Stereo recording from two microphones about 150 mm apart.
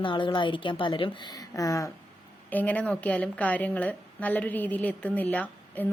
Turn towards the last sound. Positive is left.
turn(degrees=10)  # may be behind; listen again after turning